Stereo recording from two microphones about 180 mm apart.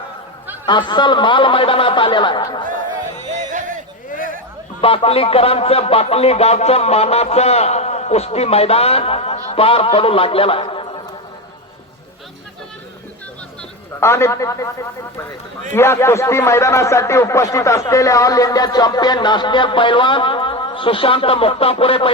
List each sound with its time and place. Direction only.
0.7 s a man's voice: 25° left (ahead or behind)
3.2 s music: 40° right (ahead or behind)
4.8 s speech: 30° left (ahead or behind)
13.6 s a sound: 15° left (ahead or behind)
15.7 s a man's voice: 15° left (ahead or behind); by 22.1 s 30° left (ahead or behind)